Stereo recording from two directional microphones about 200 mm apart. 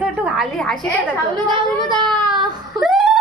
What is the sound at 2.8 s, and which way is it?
Laughter, centre (ahead or behind).